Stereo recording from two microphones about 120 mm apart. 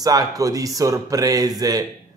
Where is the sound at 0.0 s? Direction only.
30° right (ahead or behind).